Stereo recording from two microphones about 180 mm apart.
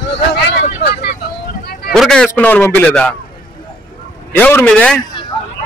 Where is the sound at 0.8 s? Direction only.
60° left (ahead or behind).